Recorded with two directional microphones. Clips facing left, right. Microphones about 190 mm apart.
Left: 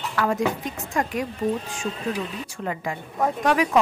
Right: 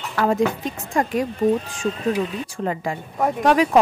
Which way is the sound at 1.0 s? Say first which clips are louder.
Right 4 dB; 30° right (ahead or behind).